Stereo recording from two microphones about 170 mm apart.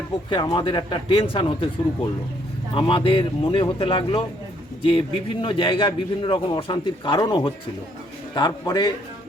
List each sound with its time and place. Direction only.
0.4 s a man's voice: 30° left (ahead or behind)
2.7 s a man's voice: 30° left (ahead or behind)